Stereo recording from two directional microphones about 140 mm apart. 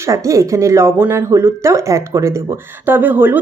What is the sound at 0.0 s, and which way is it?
Speech, 20° right (ahead or behind).